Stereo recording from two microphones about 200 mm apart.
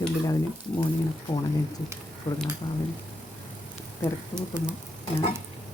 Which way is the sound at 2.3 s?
30° left (ahead or behind).